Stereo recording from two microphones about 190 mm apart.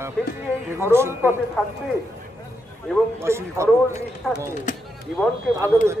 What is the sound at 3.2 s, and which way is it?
Speech, 15° right (ahead or behind).